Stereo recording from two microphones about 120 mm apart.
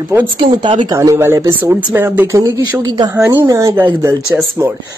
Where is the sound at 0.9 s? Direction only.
20° right (ahead or behind).